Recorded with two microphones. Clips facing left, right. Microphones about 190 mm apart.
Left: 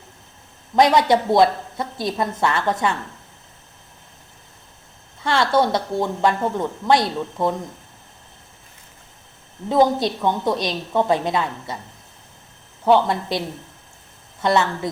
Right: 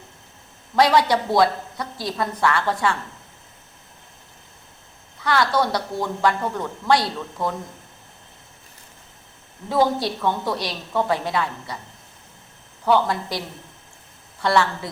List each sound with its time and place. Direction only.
0.8 s speech: 20° left (ahead or behind)
5.2 s speech: 25° left (ahead or behind)
9.6 s speech: 20° left (ahead or behind)
12.8 s speech: 25° left (ahead or behind)
14.4 s speech: 20° left (ahead or behind)